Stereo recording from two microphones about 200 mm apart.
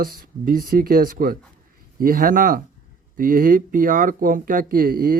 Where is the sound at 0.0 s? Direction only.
45° right (ahead or behind).